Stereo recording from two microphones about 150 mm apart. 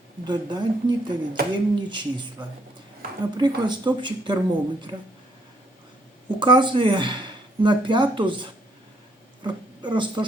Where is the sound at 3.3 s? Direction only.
30° right (ahead or behind).